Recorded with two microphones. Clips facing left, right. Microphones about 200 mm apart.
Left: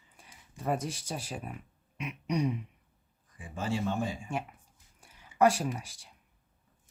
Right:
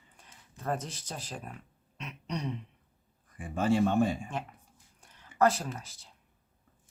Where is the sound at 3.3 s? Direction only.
60° right (ahead or behind).